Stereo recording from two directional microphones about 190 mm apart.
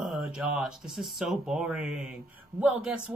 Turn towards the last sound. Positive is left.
turn(degrees=-5)  # may be behind; listen again after turning